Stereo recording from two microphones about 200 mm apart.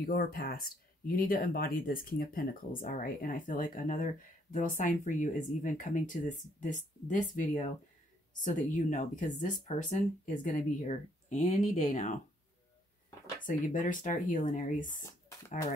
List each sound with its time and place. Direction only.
0.0 s speech: 45° left (ahead or behind)
13.5 s speech: 40° left (ahead or behind)